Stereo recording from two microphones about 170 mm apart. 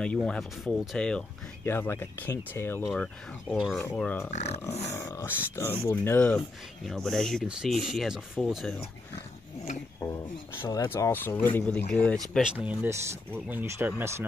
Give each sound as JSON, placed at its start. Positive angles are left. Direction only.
{"t": 0.0, "sound": "speech", "side_deg": 5}
{"t": 4.3, "sound": "speech", "side_deg": 40}
{"t": 4.9, "sound": "speech", "side_deg": 15}
{"t": 9.9, "sound": "speech", "side_deg": 20}
{"t": 12.4, "sound": "speech", "side_deg": -10}